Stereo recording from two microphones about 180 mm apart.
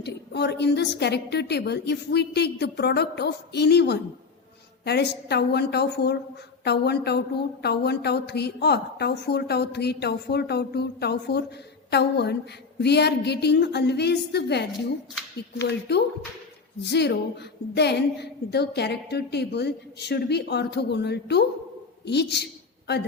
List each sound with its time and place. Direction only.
0.0 s a woman's voice: 70° left (ahead or behind)